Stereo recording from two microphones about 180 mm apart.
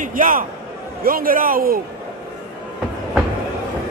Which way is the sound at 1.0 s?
50° right (ahead or behind).